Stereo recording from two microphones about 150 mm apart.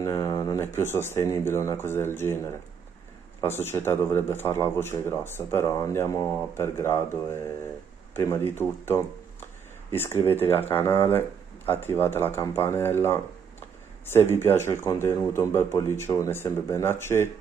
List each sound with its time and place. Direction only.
0.0 s speech: 25° left (ahead or behind)
3.3 s speech: 15° left (ahead or behind)
10.3 s speech: 15° left (ahead or behind)